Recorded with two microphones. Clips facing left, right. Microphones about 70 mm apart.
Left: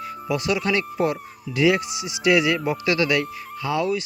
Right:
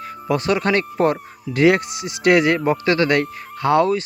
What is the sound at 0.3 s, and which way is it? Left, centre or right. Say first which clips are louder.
Speech: right 4 dB; right.